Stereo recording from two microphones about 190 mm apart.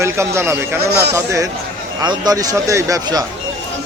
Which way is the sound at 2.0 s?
20° right (ahead or behind).